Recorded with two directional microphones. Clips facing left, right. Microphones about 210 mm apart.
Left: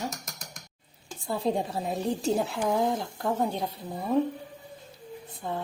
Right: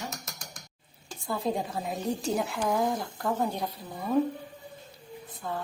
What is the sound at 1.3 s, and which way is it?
Dishes, 30° left (ahead or behind).